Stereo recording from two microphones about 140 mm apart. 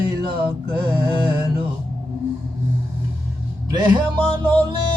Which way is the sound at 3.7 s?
35° right (ahead or behind).